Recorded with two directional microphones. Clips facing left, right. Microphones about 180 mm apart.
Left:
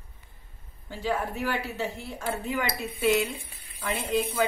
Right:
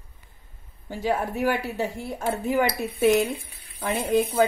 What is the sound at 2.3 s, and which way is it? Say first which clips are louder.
Speech: right 6 dB; 45° right (ahead or behind).